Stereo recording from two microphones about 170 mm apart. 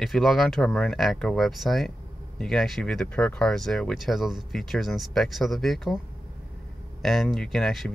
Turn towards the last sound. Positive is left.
turn(degrees=0)  # may be behind; listen again after turning